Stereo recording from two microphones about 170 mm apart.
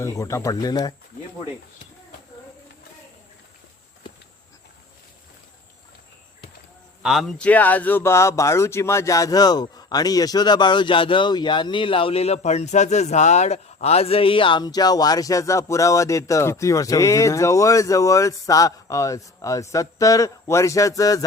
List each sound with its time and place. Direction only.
0.0 s speech: 20° left (ahead or behind)
7.0 s speech: centre (ahead or behind); by 21.2 s 20° left (ahead or behind)